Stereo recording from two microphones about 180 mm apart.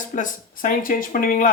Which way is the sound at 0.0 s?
50° left (ahead or behind).